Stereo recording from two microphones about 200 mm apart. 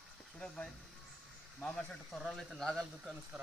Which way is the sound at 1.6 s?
5° left (ahead or behind).